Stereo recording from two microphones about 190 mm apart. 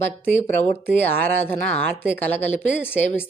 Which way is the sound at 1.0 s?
10° left (ahead or behind).